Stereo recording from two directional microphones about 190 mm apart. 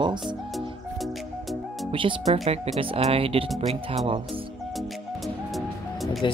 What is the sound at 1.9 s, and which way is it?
Speech, 30° right (ahead or behind).